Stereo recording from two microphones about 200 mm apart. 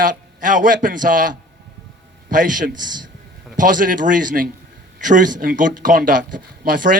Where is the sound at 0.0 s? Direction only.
40° right (ahead or behind).